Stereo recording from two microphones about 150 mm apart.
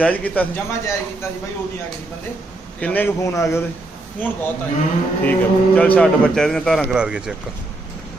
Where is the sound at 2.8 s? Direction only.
15° left (ahead or behind).